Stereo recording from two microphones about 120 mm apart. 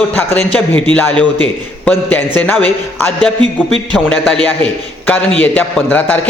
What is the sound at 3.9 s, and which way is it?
A man's voice, 5° left (ahead or behind).